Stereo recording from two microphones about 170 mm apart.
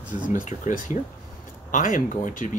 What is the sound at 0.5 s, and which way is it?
Speech, 45° left (ahead or behind).